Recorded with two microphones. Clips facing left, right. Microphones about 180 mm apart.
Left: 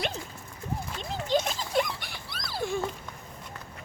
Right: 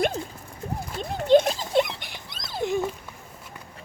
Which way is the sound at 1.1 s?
55° right (ahead or behind).